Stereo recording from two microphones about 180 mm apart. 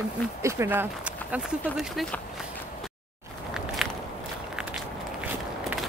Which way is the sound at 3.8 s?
Centre (ahead or behind).